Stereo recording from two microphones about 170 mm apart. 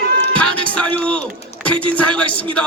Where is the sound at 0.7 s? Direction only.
5° left (ahead or behind).